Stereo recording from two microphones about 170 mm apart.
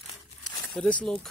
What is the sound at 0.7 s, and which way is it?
Speech, 5° left (ahead or behind).